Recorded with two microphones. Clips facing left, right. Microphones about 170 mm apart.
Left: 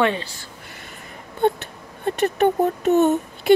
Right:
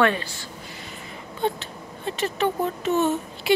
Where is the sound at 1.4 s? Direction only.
55° left (ahead or behind).